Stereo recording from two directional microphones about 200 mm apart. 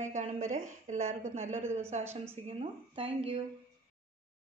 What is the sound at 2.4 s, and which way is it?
Speech, 30° right (ahead or behind).